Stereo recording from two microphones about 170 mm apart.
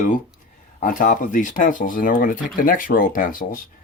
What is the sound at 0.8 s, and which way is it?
Speech, 55° left (ahead or behind).